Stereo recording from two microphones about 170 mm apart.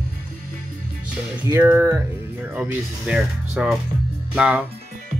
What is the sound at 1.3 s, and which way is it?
Speech, 15° right (ahead or behind).